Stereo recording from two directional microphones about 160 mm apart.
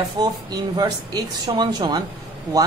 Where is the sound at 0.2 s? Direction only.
25° right (ahead or behind).